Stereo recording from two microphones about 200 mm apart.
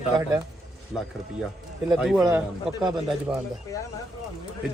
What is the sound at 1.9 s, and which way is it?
Speech, centre (ahead or behind).